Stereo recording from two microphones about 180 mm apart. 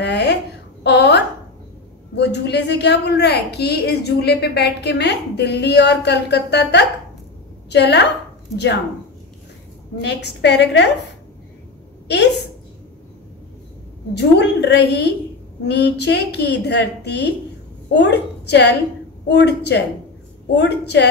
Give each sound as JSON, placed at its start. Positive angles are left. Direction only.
{"t": 0.0, "sound": "a sound", "side_deg": 70}
{"t": 2.1, "sound": "a woman's voice", "side_deg": 70}
{"t": 10.0, "sound": "a woman's voice", "side_deg": 75}
{"t": 14.1, "sound": "a woman's voice", "side_deg": 70}